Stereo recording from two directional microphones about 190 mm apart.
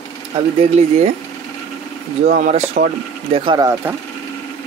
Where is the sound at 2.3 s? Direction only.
50° right (ahead or behind).